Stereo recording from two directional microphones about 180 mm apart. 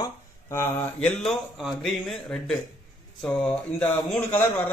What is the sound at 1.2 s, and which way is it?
A man's voice, centre (ahead or behind).